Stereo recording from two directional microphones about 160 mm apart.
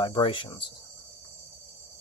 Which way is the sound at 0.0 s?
30° left (ahead or behind).